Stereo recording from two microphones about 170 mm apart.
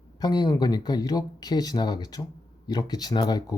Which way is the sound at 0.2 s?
25° left (ahead or behind).